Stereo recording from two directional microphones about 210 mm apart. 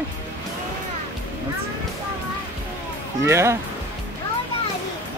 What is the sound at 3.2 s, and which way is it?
Speech, 15° right (ahead or behind).